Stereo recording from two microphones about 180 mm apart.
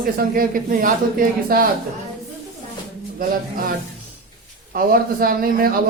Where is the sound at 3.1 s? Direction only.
55° right (ahead or behind).